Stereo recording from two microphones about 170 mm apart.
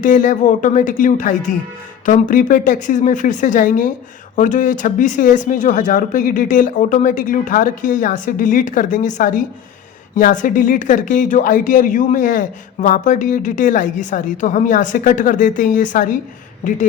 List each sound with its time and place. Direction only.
0.0 s speech: 50° left (ahead or behind)